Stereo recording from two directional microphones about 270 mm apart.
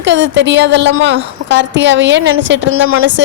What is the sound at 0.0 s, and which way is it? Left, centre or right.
A woman's voice, right.